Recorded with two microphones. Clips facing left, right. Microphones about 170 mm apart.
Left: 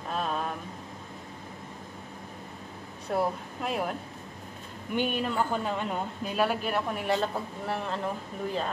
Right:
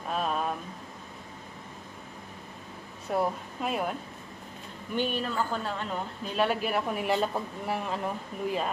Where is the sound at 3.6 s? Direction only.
Centre (ahead or behind).